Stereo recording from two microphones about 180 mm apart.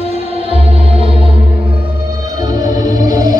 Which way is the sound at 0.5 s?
30° right (ahead or behind).